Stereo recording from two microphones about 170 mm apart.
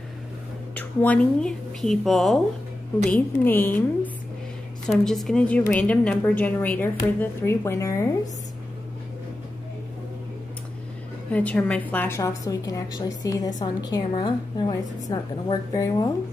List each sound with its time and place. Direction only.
0.7 s a woman's voice: 10° left (ahead or behind)
4.8 s a woman's voice: centre (ahead or behind); by 8.1 s 15° left (ahead or behind)
11.2 s a woman's voice: 10° left (ahead or behind)